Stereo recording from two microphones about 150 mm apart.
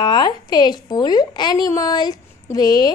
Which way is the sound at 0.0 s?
30° left (ahead or behind).